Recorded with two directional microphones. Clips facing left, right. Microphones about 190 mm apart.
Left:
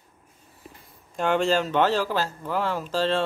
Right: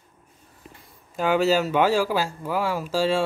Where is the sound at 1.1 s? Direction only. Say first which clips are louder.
Right 2 dB; 5° right (ahead or behind).